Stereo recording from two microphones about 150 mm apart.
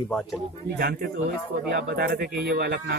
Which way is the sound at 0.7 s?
90° right.